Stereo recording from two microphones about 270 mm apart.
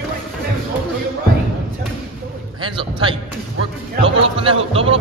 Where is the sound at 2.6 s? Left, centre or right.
Centre.